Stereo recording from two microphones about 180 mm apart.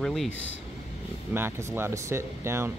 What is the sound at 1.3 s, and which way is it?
Speech, 15° right (ahead or behind).